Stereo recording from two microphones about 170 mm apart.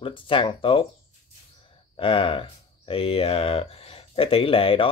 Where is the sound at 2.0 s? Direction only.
30° left (ahead or behind).